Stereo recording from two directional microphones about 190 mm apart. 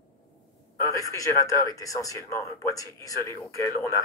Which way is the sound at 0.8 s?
15° left (ahead or behind).